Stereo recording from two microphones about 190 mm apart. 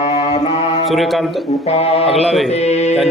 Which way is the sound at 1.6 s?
35° left (ahead or behind).